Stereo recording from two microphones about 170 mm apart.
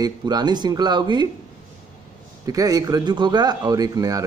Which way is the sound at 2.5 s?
20° right (ahead or behind).